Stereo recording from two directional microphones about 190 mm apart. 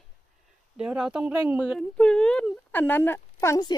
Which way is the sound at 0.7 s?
5° right (ahead or behind).